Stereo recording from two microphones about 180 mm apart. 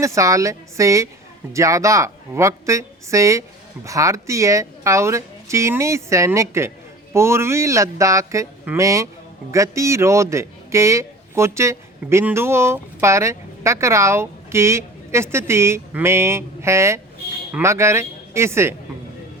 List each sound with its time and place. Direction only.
0.0 s a man's voice: 15° right (ahead or behind)